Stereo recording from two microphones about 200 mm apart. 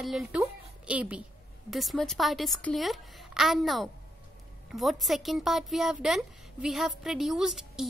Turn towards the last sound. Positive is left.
turn(degrees=0)  # may be behind; listen again after turning